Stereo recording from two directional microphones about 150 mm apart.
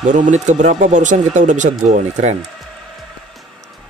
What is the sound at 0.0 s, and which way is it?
Speech, 55° right (ahead or behind).